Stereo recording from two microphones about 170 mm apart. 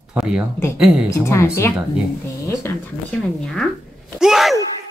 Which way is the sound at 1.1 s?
15° left (ahead or behind).